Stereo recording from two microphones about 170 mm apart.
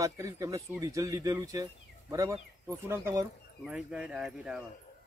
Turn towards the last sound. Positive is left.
turn(degrees=-5)  # may be behind; listen again after turning